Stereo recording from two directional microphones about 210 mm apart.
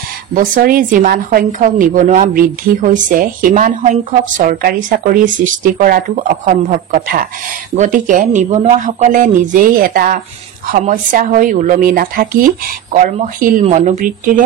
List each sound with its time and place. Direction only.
0.3 s a woman's voice: 40° right (ahead or behind)